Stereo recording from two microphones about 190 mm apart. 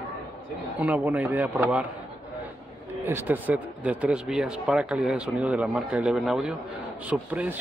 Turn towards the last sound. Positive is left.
turn(degrees=-10)  # may be behind; listen again after turning